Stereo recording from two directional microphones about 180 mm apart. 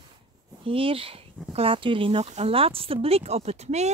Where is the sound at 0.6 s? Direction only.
30° right (ahead or behind).